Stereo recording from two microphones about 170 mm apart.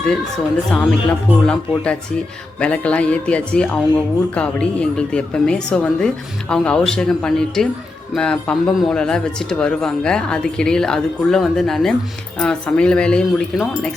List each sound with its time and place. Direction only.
0.1 s speech: 5° left (ahead or behind)